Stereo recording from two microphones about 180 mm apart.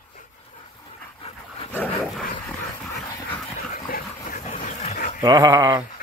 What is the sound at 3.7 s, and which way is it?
Dog, 50° left (ahead or behind).